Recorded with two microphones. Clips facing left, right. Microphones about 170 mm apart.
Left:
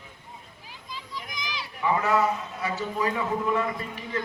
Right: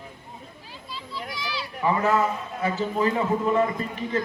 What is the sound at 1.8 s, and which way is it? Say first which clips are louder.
Speech: right 1 dB; 50° right (ahead or behind).